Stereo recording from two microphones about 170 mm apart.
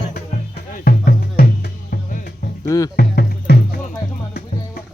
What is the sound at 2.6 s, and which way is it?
Speech, 15° left (ahead or behind).